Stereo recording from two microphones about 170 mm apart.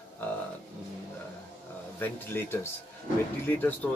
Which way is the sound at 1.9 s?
10° left (ahead or behind).